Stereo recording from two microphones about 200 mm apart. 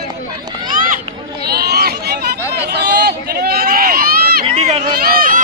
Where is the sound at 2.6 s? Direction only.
55° right (ahead or behind).